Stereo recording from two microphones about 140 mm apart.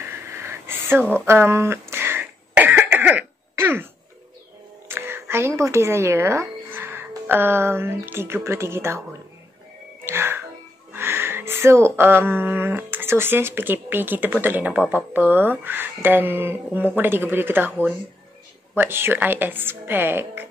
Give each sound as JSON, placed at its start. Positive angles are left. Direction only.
{"t": 0.0, "sound": "a sound", "side_deg": -15}
{"t": 1.2, "sound": "cough", "side_deg": -20}
{"t": 4.8, "sound": "music", "side_deg": -15}
{"t": 5.6, "sound": "speech", "side_deg": -20}
{"t": 10.0, "sound": "music", "side_deg": -15}
{"t": 10.9, "sound": "speech", "side_deg": -15}